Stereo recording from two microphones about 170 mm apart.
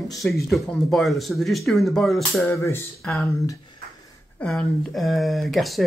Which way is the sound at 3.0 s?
Centre (ahead or behind).